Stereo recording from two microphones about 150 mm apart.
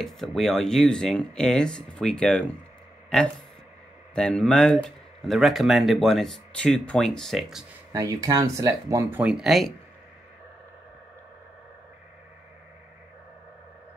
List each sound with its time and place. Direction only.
0.0 s speech: centre (ahead or behind)
4.1 s speech: 5° left (ahead or behind)
7.9 s speech: 20° right (ahead or behind)
9.2 s speech: 5° right (ahead or behind)